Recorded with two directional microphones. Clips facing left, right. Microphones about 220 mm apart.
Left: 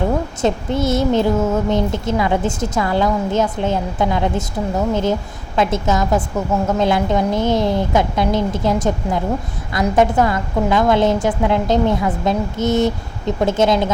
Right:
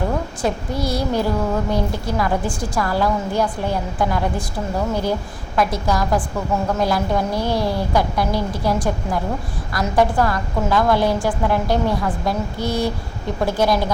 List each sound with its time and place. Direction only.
0.4 s a woman's voice: 25° left (ahead or behind)
5.5 s a woman's voice: 25° left (ahead or behind)